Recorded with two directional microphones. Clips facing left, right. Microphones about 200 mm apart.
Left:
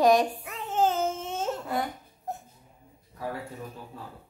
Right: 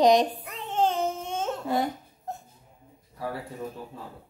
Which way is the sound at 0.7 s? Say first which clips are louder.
Even; 5° left (ahead or behind).